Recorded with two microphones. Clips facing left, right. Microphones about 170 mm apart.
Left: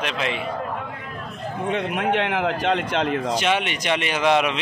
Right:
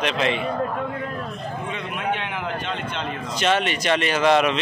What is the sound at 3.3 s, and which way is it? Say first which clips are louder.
Speech: right 1 dB; 15° left (ahead or behind).